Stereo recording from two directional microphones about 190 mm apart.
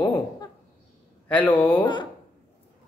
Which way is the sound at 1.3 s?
10° left (ahead or behind).